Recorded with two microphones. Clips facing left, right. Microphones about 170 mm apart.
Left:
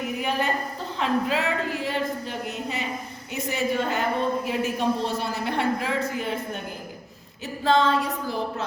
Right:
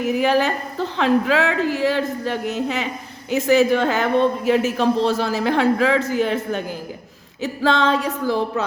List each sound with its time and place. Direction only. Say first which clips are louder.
0.0 s a woman's voice: right 8 dB; 90° right